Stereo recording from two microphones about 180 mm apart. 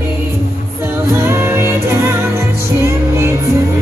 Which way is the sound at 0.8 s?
15° right (ahead or behind).